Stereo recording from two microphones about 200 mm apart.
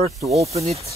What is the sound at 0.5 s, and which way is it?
Speech, 30° right (ahead or behind).